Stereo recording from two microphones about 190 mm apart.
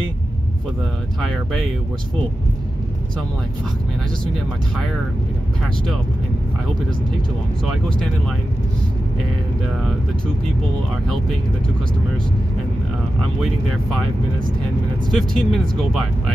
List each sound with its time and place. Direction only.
1.2 s speech: 5° left (ahead or behind)
15.0 s speech: centre (ahead or behind)